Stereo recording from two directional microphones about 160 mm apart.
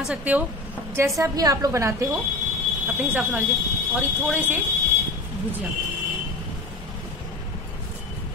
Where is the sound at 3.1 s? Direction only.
10° right (ahead or behind).